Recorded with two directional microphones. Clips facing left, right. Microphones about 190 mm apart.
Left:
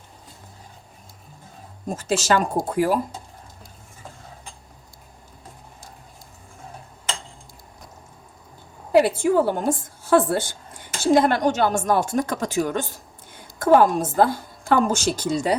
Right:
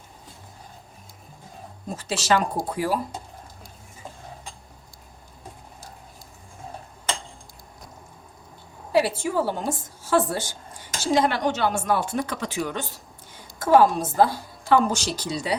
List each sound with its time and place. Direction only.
2.0 s a woman's voice: 45° left (ahead or behind)
8.9 s a woman's voice: 55° left (ahead or behind)